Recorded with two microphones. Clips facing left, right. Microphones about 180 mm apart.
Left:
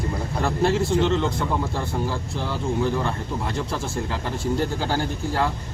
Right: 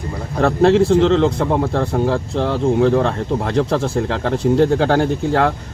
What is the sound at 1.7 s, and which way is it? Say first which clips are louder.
Speech: right 9 dB; 80° right.